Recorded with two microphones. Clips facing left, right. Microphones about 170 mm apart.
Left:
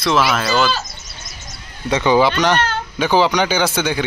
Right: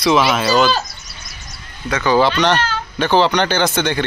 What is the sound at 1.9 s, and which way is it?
Speech, 25° left (ahead or behind).